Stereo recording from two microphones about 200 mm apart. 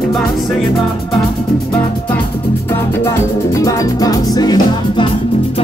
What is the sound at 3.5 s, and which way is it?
Music, 15° left (ahead or behind).